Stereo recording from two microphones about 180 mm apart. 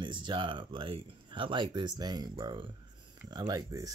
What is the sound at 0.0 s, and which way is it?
Speech, 25° right (ahead or behind).